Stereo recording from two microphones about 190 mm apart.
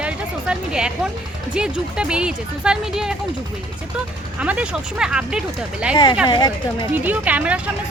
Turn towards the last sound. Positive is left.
turn(degrees=-5)  # may be behind; listen again after turning